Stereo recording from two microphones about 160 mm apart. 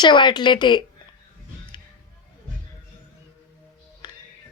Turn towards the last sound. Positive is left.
turn(degrees=30)  # may be behind; listen again after turning